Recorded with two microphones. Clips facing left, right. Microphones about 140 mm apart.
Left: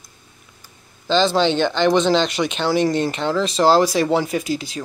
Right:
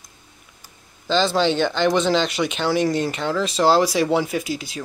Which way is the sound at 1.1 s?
10° right (ahead or behind).